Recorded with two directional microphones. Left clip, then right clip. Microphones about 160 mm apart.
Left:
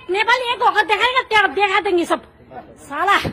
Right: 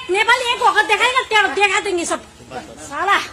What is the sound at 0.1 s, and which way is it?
A woman's voice, 35° left (ahead or behind).